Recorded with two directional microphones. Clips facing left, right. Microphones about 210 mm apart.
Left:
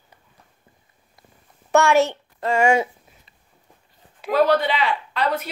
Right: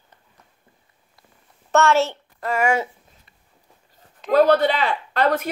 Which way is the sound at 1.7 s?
15° left (ahead or behind).